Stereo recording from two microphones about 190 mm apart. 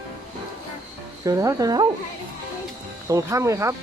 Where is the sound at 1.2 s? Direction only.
15° right (ahead or behind).